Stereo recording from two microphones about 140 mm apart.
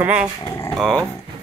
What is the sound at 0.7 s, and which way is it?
Speech, centre (ahead or behind).